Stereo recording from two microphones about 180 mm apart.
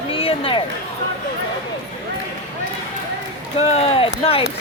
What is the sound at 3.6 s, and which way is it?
Speech, 35° left (ahead or behind).